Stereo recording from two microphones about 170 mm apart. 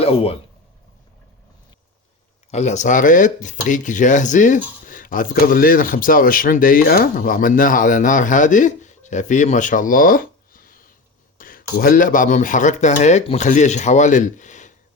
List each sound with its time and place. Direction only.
0.0 s speech: 35° left (ahead or behind)
2.5 s speech: 45° left (ahead or behind)
11.3 s a sound: 55° left (ahead or behind)
11.8 s speech: 55° left (ahead or behind)